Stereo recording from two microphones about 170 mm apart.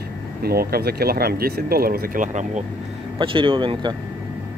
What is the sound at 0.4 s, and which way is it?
Speech, 65° right (ahead or behind).